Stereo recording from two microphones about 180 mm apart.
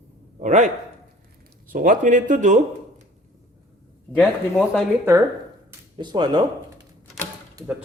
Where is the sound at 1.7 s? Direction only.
50° right (ahead or behind).